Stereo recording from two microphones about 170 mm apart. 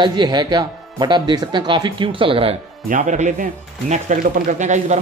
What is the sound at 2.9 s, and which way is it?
Speech, 50° right (ahead or behind).